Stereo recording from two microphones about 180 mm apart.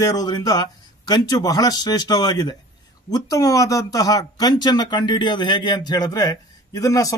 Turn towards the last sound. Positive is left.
turn(degrees=20)  # may be behind; listen again after turning